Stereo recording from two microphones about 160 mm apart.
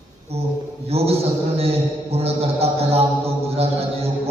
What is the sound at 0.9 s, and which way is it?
Speech, 40° right (ahead or behind).